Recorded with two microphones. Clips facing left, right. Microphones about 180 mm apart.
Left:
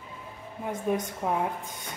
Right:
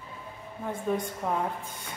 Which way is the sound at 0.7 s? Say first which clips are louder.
Left 1 dB; 15° left (ahead or behind).